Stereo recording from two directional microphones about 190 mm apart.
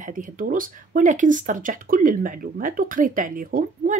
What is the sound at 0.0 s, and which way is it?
Speech, 45° right (ahead or behind).